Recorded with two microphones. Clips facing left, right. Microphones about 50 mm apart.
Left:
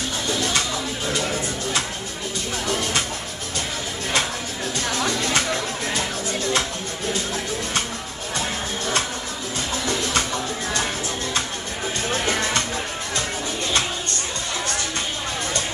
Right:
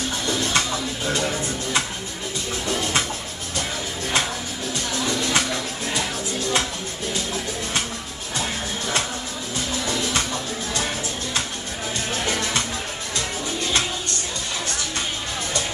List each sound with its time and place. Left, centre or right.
0.5 s music: right
4.7 s music: left
8.4 s music: left
12.1 s music: left